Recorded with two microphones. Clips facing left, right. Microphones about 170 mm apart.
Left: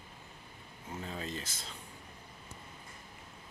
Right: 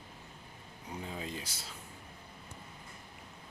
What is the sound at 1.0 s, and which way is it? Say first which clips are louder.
Speech: left 1 dB; 15° right (ahead or behind).